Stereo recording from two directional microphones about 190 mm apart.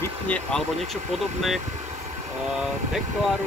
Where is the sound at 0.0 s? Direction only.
5° left (ahead or behind).